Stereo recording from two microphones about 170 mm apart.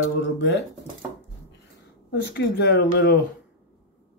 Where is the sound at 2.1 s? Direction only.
80° left.